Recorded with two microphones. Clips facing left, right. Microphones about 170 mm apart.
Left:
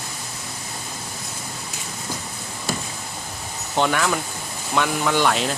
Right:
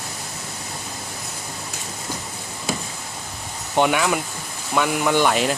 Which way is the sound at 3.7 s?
10° right (ahead or behind).